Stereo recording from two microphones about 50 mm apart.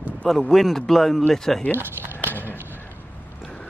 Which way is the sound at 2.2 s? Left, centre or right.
Left.